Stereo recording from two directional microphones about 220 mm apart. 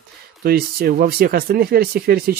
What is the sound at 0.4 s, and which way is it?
Speech, 45° right (ahead or behind).